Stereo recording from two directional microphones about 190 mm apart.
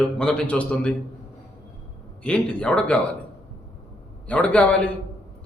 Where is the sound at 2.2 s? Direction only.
5° left (ahead or behind).